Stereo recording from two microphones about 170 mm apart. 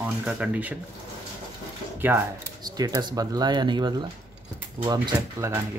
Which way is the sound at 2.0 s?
10° right (ahead or behind).